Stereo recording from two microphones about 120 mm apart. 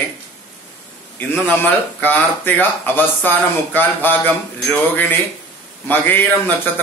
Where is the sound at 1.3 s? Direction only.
15° left (ahead or behind).